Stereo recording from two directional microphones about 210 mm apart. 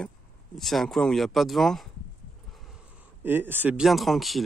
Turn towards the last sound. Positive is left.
turn(degrees=0)  # may be behind; listen again after turning